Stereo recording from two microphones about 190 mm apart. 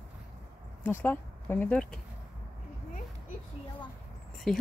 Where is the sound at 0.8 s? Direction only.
10° left (ahead or behind).